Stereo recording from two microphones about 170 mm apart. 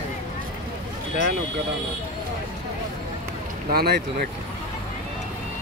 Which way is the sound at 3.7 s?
70° right (ahead or behind).